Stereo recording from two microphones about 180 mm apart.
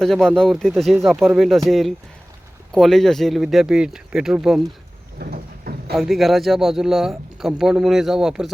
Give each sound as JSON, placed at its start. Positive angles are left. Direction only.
{"t": 0.0, "sound": "speech", "side_deg": 5}
{"t": 5.2, "sound": "a sound", "side_deg": -55}
{"t": 5.9, "sound": "speech", "side_deg": 0}